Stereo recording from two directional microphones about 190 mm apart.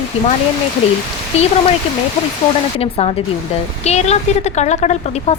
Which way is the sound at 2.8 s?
30° left (ahead or behind).